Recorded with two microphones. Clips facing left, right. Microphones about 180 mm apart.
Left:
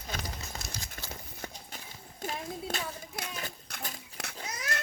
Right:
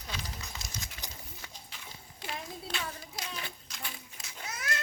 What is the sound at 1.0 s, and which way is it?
Clip-clop, 15° right (ahead or behind).